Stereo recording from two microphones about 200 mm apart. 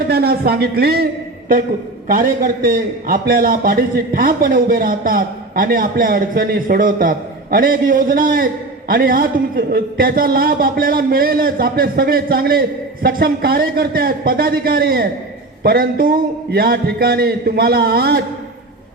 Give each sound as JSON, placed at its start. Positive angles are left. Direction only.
{"t": 0.1, "sound": "a man's voice", "side_deg": -50}
{"t": 2.0, "sound": "a man's voice", "side_deg": -45}